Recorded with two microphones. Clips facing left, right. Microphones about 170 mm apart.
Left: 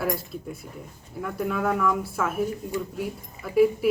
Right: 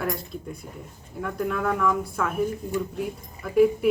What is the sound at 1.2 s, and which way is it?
Speech, 5° left (ahead or behind).